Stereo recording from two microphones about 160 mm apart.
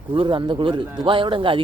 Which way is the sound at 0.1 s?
30° right (ahead or behind).